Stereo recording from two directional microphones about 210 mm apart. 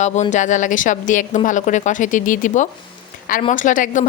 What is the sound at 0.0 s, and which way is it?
Speech, 35° left (ahead or behind).